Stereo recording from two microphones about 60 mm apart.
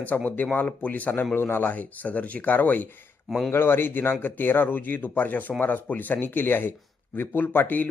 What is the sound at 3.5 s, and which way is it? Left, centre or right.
A man's voice, left.